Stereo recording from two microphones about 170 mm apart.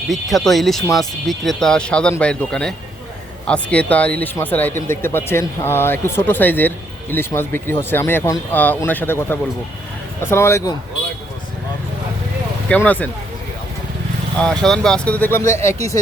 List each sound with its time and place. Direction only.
0.1 s speech: centre (ahead or behind); by 10.8 s 20° left (ahead or behind)
12.6 s speech: 10° left (ahead or behind)
14.3 s speech: 5° left (ahead or behind)